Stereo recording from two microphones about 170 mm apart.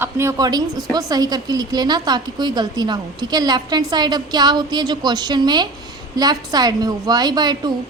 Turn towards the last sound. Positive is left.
turn(degrees=-25)  # may be behind; listen again after turning